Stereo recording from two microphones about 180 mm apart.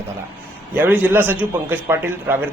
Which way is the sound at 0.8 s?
10° right (ahead or behind).